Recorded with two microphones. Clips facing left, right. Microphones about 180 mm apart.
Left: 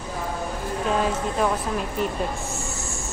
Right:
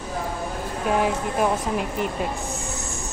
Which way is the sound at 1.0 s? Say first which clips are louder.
Right 1 dB; 15° right (ahead or behind).